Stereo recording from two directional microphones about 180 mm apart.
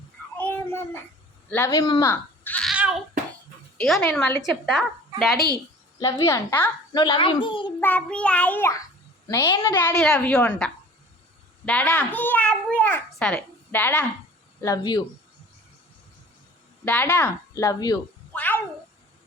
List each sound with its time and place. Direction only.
0.3 s child singing: 10° left (ahead or behind)
1.5 s a woman's voice: 10° left (ahead or behind)
2.6 s a sound: 5° right (ahead or behind)
3.8 s a woman's voice: centre (ahead or behind)
6.0 s a woman's voice: 15° left (ahead or behind)
7.8 s a woman's voice: 10° left (ahead or behind)
9.3 s a child's voice: 20° left (ahead or behind)
10.0 s a woman's voice: 5° left (ahead or behind)
14.6 s a child's voice: 20° left (ahead or behind)
16.8 s a woman's voice: 10° left (ahead or behind)
18.3 s cat: 10° left (ahead or behind)